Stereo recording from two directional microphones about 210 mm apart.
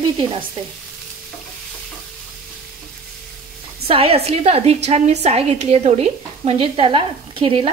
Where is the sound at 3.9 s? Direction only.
25° right (ahead or behind).